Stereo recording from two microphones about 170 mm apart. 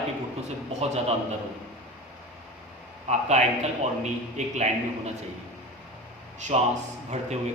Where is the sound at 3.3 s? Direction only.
40° right (ahead or behind).